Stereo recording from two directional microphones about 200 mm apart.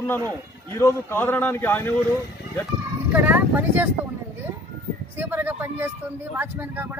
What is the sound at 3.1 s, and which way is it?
Speech, 10° right (ahead or behind).